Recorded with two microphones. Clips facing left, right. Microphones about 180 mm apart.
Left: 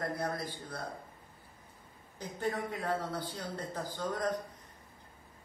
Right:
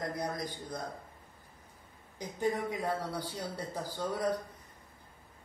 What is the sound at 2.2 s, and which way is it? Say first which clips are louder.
A man's voice: right 3 dB; 15° right (ahead or behind).